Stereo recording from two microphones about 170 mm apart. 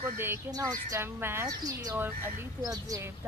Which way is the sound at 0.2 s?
15° right (ahead or behind).